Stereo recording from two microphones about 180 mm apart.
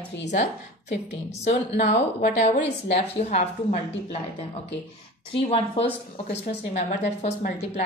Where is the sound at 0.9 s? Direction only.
40° left (ahead or behind).